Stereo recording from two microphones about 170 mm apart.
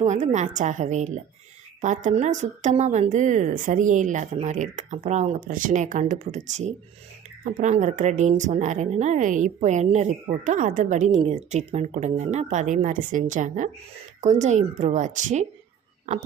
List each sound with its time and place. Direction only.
0.0 s speech: 45° right (ahead or behind)